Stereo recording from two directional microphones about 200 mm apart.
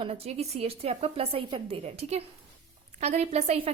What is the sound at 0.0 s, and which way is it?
A woman's voice, 30° right (ahead or behind).